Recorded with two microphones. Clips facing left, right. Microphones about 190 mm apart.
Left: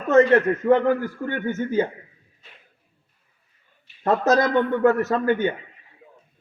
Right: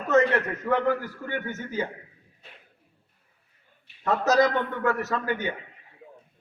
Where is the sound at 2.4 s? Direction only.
60° right (ahead or behind).